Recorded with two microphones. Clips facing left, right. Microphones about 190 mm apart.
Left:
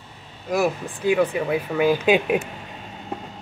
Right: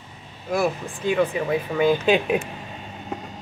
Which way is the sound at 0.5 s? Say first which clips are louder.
Left 1 dB; 10° left (ahead or behind).